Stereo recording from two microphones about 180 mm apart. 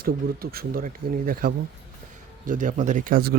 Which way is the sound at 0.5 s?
50° right (ahead or behind).